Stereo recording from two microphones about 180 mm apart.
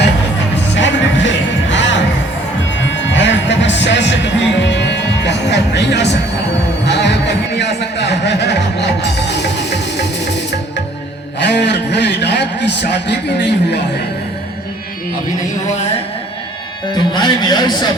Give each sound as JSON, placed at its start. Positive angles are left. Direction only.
{"t": 0.8, "sound": "music", "side_deg": 90}
{"t": 6.8, "sound": "a sound", "side_deg": 70}
{"t": 17.2, "sound": "speech", "side_deg": 25}